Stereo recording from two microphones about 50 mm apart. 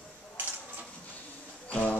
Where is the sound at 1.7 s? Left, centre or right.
Left.